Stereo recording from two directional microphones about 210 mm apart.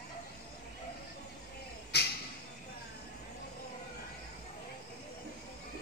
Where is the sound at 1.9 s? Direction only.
50° left (ahead or behind).